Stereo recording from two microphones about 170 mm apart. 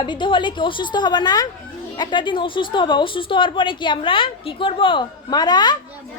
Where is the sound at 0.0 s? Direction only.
30° left (ahead or behind).